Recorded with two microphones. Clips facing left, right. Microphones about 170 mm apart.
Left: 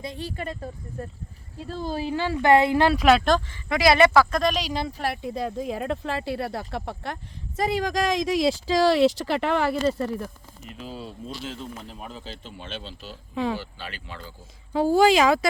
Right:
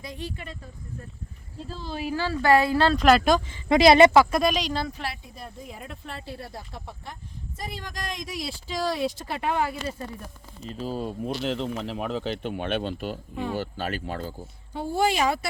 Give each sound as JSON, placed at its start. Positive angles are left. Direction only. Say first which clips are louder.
{"t": 0.0, "sound": "speech", "louder": "left 2 dB", "side_deg": 30}
{"t": 0.3, "sound": "speech", "louder": "left 8 dB", "side_deg": 50}
{"t": 1.7, "sound": "speech", "louder": "left 6 dB", "side_deg": 50}
{"t": 2.0, "sound": "speech", "louder": "left 1 dB", "side_deg": 25}
{"t": 3.0, "sound": "speech", "louder": "right 1 dB", "side_deg": 0}
{"t": 3.7, "sound": "speech", "louder": "right 3 dB", "side_deg": -25}
{"t": 4.3, "sound": "speech", "louder": "even", "side_deg": -5}
{"t": 4.9, "sound": "speech", "louder": "left 5 dB", "side_deg": 40}
{"t": 5.1, "sound": "speech", "louder": "left 13 dB", "side_deg": 80}
{"t": 10.7, "sound": "speech", "louder": "right 6 dB", "side_deg": -40}
{"t": 11.3, "sound": "speech", "louder": "right 8 dB", "side_deg": -70}
{"t": 13.3, "sound": "speech", "louder": "left 6 dB", "side_deg": 90}
{"t": 13.6, "sound": "speech", "louder": "right 8 dB", "side_deg": -45}
{"t": 14.8, "sound": "speech", "louder": "left 6 dB", "side_deg": 90}